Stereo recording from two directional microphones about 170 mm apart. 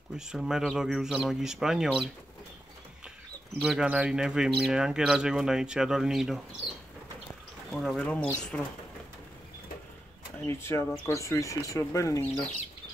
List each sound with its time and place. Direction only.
0.3 s speech: 5° right (ahead or behind)
3.5 s speech: centre (ahead or behind)
7.7 s speech: 5° left (ahead or behind)
10.4 s speech: 15° left (ahead or behind)